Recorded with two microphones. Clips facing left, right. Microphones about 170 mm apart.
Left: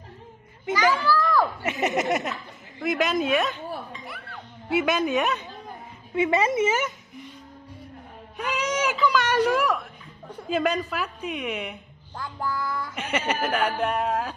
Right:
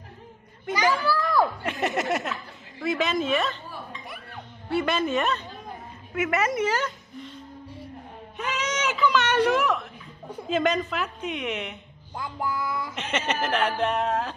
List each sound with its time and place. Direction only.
0.7 s children playing: 15° right (ahead or behind)
1.6 s speech: centre (ahead or behind)
4.6 s speech: centre (ahead or behind)
6.1 s a woman's voice: 30° left (ahead or behind)
8.4 s whimper: 10° left (ahead or behind)
10.5 s speech: 10° left (ahead or behind)
12.2 s music: 15° right (ahead or behind)
12.9 s speech: 10° left (ahead or behind)